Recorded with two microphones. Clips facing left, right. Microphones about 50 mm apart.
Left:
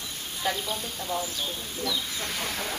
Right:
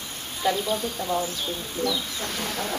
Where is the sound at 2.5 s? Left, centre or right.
Centre.